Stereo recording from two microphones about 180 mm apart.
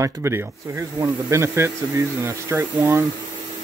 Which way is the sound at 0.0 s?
15° right (ahead or behind).